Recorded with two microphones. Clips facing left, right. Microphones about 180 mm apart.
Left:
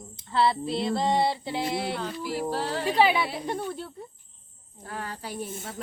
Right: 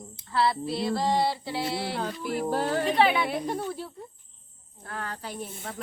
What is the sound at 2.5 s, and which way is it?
Speech, 50° right (ahead or behind).